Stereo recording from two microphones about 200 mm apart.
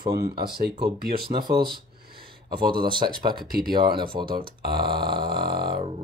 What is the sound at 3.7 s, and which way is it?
Speech, 25° right (ahead or behind).